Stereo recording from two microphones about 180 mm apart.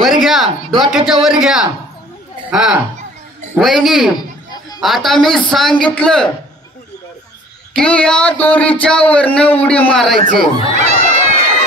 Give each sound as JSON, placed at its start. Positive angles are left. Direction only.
{"t": 0.2, "sound": "a woman's voice", "side_deg": 0}
{"t": 7.7, "sound": "speech", "side_deg": 5}
{"t": 10.2, "sound": "speech", "side_deg": -40}